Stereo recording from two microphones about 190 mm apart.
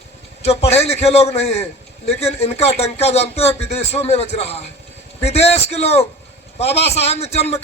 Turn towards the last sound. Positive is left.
turn(degrees=35)  # may be behind; listen again after turning